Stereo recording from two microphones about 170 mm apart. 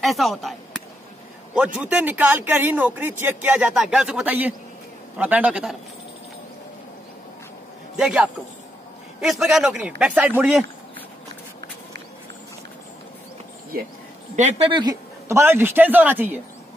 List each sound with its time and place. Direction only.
0.0 s speech: centre (ahead or behind)
7.9 s a man's voice: 5° right (ahead or behind)
14.3 s a woman's voice: 45° right (ahead or behind)
14.7 s speech: 25° right (ahead or behind)